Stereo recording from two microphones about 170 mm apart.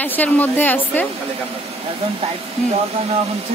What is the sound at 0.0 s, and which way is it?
Speech, 10° left (ahead or behind).